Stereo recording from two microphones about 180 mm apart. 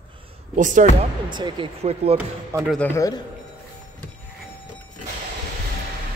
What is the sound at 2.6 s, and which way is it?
Speech, 10° left (ahead or behind).